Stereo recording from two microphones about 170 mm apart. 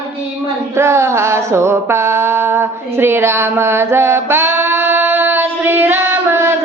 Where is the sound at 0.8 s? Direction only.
15° right (ahead or behind).